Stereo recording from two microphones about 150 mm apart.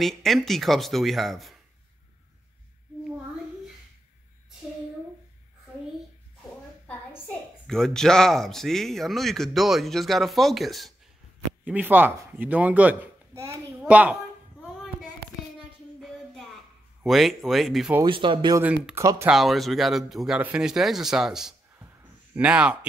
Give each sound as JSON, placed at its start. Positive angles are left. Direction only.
{"t": 0.0, "sound": "speech", "side_deg": 0}
{"t": 7.6, "sound": "speech", "side_deg": 5}
{"t": 11.6, "sound": "a woman's voice", "side_deg": -10}
{"t": 14.8, "sound": "child singing", "side_deg": 0}
{"t": 16.0, "sound": "a sound", "side_deg": 0}
{"t": 17.0, "sound": "speech", "side_deg": 0}
{"t": 18.0, "sound": "speech", "side_deg": -35}
{"t": 18.6, "sound": "speech", "side_deg": -10}